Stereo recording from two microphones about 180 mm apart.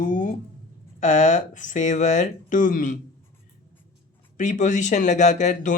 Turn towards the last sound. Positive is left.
turn(degrees=40)  # may be behind; listen again after turning